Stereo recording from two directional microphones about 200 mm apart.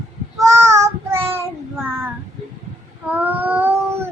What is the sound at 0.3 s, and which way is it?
Child singing, 15° right (ahead or behind).